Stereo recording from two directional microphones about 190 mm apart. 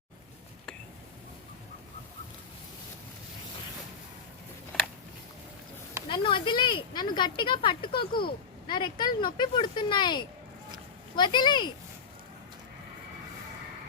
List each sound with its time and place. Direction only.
6.1 s speech: 25° left (ahead or behind)